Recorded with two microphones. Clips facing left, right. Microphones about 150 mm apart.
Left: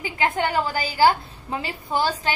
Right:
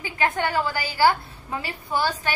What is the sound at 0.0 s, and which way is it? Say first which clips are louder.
A woman's voice: left 1 dB; 20° left (ahead or behind).